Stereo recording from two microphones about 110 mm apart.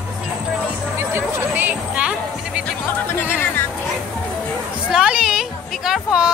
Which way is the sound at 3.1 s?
20° left (ahead or behind).